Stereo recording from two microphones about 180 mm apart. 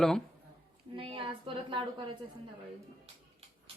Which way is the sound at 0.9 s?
30° right (ahead or behind).